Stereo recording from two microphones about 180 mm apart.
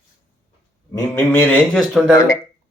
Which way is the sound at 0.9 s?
10° left (ahead or behind).